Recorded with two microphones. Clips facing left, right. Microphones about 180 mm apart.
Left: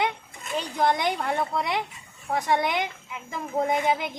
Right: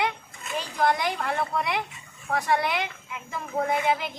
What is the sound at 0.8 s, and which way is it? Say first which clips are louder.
A woman's voice: left 1 dB; 20° left (ahead or behind).